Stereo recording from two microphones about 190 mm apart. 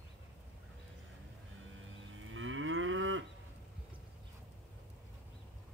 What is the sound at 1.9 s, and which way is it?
Moo, 90° right.